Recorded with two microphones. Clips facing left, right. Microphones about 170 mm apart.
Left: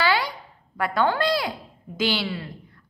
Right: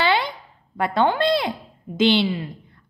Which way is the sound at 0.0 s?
25° right (ahead or behind).